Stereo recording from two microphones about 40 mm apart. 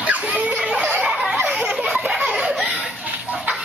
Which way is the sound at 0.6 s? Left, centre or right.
Right.